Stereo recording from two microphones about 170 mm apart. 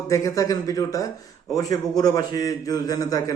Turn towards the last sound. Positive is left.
turn(degrees=20)  # may be behind; listen again after turning